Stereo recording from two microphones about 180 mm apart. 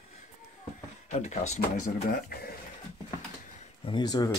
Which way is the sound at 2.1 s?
60° left (ahead or behind).